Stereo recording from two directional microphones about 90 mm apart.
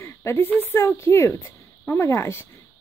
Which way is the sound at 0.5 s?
30° left (ahead or behind).